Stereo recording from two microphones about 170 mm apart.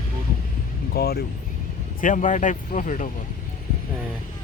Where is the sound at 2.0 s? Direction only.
50° left (ahead or behind).